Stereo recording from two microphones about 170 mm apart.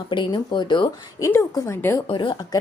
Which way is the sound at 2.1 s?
30° left (ahead or behind).